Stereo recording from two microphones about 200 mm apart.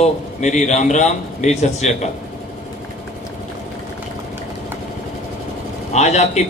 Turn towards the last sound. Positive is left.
turn(degrees=35)  # may be behind; listen again after turning